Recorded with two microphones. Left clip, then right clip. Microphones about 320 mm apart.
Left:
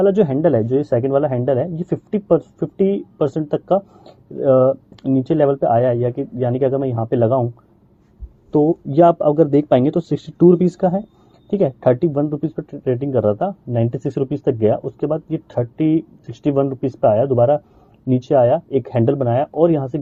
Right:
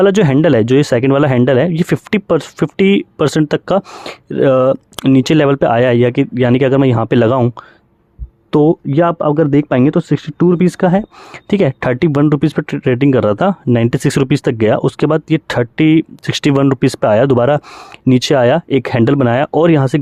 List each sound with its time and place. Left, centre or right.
0.0 s speech: right
8.9 s speech: right